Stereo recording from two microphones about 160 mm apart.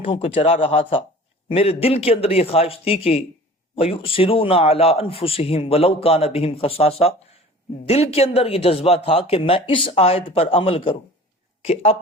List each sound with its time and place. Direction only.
0.0 s a man's voice: 35° left (ahead or behind)